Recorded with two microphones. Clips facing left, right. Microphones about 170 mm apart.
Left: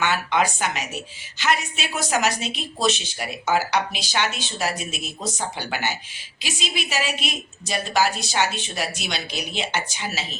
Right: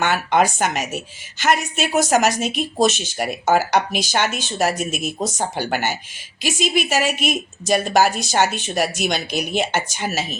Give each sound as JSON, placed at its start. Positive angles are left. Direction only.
{"t": 0.0, "sound": "a woman's voice", "side_deg": -50}